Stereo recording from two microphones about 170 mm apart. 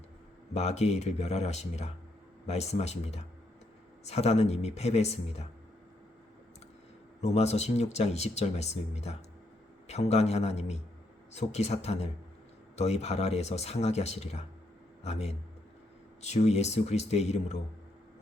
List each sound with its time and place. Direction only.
0.5 s speech: 40° left (ahead or behind)
7.2 s speech: 40° left (ahead or behind)